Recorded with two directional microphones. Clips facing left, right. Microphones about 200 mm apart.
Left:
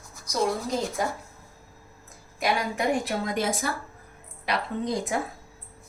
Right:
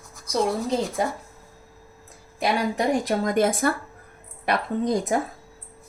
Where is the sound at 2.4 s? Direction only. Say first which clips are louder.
Right 3 dB; 40° right (ahead or behind).